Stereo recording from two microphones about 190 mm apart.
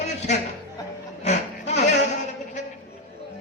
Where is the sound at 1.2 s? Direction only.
35° left (ahead or behind).